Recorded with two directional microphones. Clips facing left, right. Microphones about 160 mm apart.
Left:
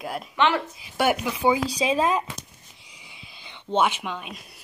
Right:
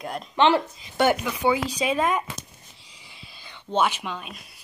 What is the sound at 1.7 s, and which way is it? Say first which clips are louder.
Speech: left 1 dB; 30° left (ahead or behind).